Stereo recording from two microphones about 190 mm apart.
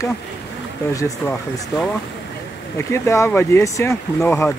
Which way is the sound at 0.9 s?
15° left (ahead or behind).